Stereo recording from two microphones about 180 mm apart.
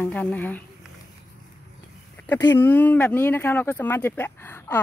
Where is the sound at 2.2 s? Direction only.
10° left (ahead or behind).